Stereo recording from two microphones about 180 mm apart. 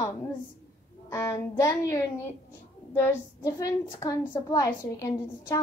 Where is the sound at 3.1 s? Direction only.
20° left (ahead or behind).